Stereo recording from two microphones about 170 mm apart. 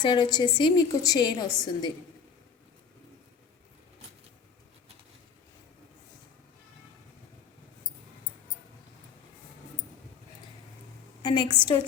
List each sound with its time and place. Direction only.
0.0 s a woman's voice: 25° left (ahead or behind)
11.2 s a woman's voice: 25° left (ahead or behind)